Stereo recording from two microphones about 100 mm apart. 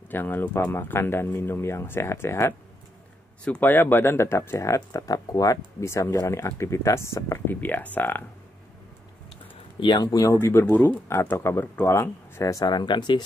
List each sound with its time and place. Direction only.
0.1 s speech: 20° left (ahead or behind)
3.4 s speech: 15° left (ahead or behind)
9.8 s speech: 45° left (ahead or behind)
10.4 s speech: 25° left (ahead or behind); by 13.2 s 50° left (ahead or behind)